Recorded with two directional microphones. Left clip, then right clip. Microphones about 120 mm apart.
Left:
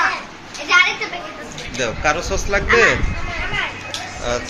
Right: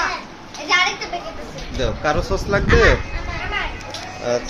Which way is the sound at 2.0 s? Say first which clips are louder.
Left 1 dB; 60° right (ahead or behind).